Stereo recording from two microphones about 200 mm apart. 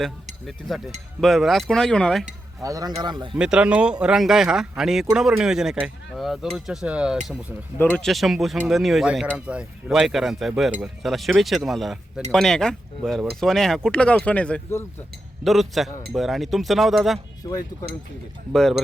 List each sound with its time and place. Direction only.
1.2 s speech: centre (ahead or behind)
2.6 s speech: 15° right (ahead or behind)
3.3 s speech: 5° right (ahead or behind)
18.5 s speech: centre (ahead or behind)